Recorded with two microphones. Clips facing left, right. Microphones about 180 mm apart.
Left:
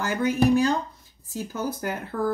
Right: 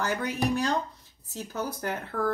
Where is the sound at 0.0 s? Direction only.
Centre (ahead or behind).